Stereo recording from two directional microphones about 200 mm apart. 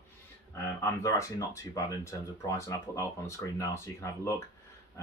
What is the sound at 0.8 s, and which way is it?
Speech, 15° left (ahead or behind).